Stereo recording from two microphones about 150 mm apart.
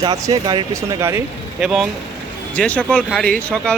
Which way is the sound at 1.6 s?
5° right (ahead or behind).